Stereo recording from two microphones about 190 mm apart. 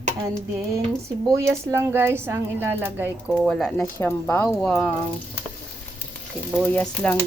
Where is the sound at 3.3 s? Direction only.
5° left (ahead or behind).